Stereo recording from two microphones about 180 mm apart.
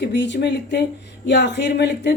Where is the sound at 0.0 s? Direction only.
80° left.